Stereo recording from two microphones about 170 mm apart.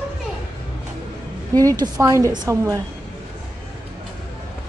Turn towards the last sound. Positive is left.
turn(degrees=-20)  # may be behind; listen again after turning